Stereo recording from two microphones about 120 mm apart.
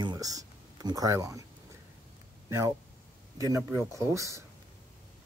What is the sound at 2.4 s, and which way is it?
Speech, 25° right (ahead or behind).